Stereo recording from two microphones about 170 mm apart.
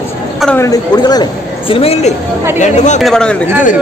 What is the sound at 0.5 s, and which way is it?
A woman's voice, 20° left (ahead or behind).